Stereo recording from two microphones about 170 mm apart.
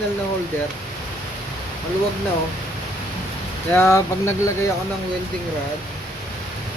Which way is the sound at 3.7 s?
15° left (ahead or behind).